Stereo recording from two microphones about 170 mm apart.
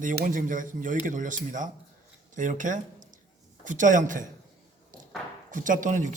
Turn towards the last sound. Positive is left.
turn(degrees=-50)  # may be behind; listen again after turning